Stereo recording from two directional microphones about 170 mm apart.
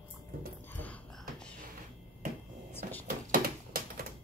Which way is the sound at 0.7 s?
10° left (ahead or behind).